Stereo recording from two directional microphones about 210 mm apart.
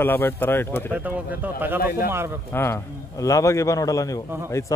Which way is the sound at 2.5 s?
10° left (ahead or behind).